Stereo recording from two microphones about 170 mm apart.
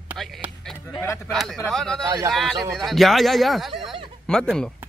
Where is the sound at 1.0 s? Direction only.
15° left (ahead or behind).